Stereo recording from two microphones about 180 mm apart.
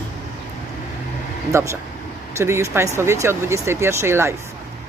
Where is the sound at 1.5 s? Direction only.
15° right (ahead or behind).